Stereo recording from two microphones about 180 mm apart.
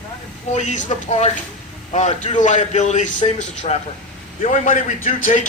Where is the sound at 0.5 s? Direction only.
40° left (ahead or behind).